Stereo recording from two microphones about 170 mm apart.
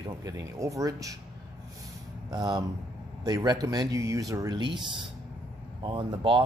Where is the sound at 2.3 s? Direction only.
25° right (ahead or behind).